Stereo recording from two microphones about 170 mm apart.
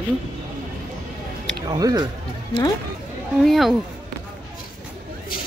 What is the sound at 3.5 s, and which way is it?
Speech, centre (ahead or behind).